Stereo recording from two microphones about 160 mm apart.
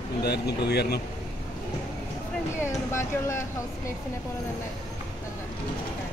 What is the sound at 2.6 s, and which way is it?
Speech, 15° left (ahead or behind).